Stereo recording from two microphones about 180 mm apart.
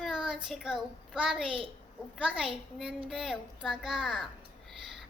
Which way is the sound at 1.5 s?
30° right (ahead or behind).